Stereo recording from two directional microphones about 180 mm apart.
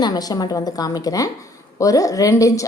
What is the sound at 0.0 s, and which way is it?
Speech, 20° left (ahead or behind).